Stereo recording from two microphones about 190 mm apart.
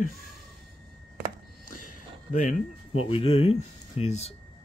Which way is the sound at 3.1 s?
30° left (ahead or behind).